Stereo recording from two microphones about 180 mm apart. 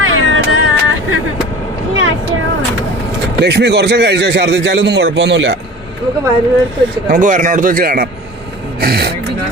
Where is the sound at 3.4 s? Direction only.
70° right (ahead or behind).